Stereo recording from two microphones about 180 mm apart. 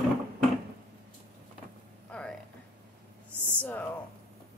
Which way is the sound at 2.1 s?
5° left (ahead or behind).